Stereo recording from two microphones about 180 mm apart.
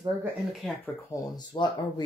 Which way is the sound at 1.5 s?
25° left (ahead or behind).